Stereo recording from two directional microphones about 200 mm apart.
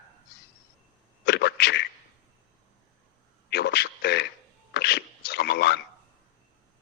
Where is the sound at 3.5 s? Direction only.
55° left (ahead or behind).